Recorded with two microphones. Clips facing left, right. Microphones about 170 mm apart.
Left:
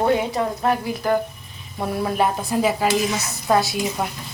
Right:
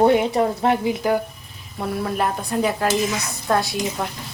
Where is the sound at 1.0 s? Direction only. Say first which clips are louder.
Even; 10° right (ahead or behind).